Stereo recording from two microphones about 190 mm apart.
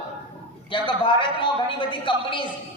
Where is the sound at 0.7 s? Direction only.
25° left (ahead or behind).